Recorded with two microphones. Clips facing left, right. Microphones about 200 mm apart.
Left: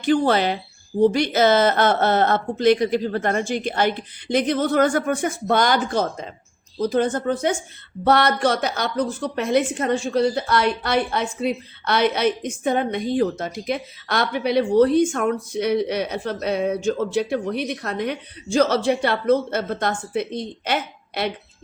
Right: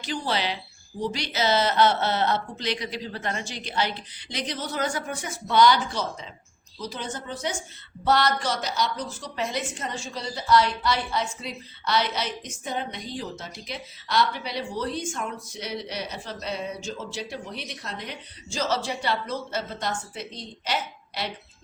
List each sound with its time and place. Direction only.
0.0 s a woman's voice: 55° left (ahead or behind)